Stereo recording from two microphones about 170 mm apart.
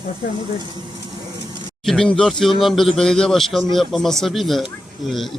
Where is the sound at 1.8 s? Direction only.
Centre (ahead or behind).